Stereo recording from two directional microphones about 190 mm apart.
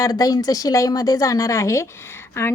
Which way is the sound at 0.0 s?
20° left (ahead or behind).